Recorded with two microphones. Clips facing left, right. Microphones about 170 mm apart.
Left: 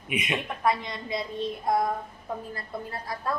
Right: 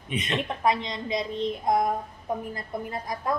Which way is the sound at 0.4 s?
20° right (ahead or behind).